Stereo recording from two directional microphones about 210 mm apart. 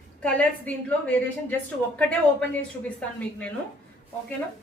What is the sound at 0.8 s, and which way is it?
Speech, 5° left (ahead or behind).